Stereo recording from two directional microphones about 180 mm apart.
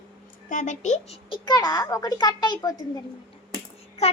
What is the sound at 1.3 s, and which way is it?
A child's voice, 25° left (ahead or behind).